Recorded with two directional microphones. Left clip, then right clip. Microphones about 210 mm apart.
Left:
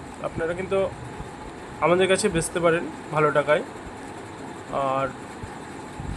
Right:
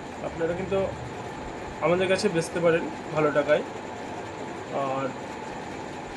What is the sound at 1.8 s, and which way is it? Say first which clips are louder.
Speech: left 3 dB; 55° left (ahead or behind).